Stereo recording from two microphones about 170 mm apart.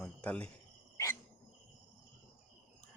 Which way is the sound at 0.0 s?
5° left (ahead or behind).